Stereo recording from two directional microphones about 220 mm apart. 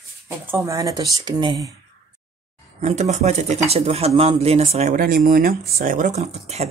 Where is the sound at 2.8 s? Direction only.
30° right (ahead or behind).